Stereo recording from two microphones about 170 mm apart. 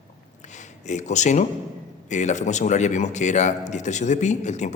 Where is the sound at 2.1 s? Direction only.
45° left (ahead or behind).